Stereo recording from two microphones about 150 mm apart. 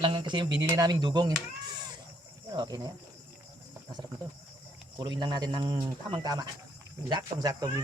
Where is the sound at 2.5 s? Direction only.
25° right (ahead or behind).